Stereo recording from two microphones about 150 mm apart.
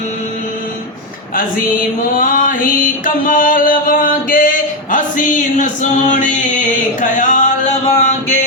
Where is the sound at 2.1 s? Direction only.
65° left (ahead or behind).